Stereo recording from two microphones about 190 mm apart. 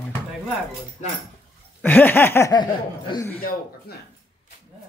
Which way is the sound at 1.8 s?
10° left (ahead or behind).